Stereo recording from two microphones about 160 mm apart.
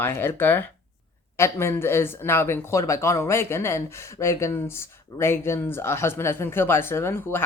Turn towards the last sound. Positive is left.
turn(degrees=15)  # may be behind; listen again after turning